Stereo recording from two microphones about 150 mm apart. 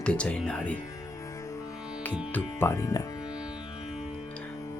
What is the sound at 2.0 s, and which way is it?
Speech, 15° left (ahead or behind).